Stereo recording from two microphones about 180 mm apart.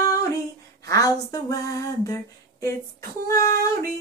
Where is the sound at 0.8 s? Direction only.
20° left (ahead or behind).